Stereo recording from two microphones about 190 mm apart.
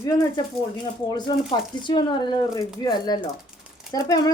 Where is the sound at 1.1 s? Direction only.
25° left (ahead or behind).